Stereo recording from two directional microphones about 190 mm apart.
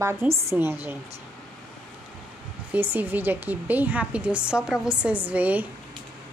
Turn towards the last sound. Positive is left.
turn(degrees=-5)  # may be behind; listen again after turning